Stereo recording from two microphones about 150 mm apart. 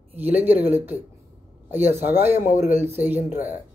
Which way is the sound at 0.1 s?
10° right (ahead or behind).